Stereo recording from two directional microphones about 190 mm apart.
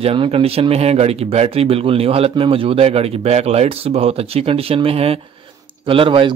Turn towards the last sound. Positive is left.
turn(degrees=-30)  # may be behind; listen again after turning